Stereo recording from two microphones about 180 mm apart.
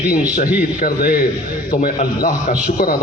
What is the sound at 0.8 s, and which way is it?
A man's voice, 55° left (ahead or behind).